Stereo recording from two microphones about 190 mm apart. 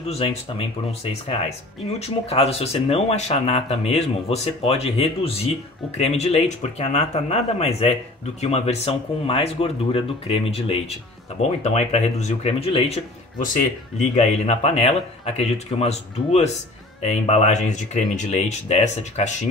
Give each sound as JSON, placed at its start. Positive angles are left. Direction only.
{"t": 0.0, "sound": "speech", "side_deg": 35}